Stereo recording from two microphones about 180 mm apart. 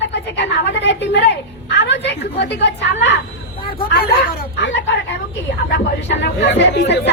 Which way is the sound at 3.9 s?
65° left (ahead or behind).